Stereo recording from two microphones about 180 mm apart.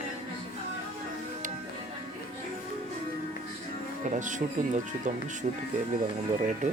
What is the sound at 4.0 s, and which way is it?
Speech, 45° right (ahead or behind).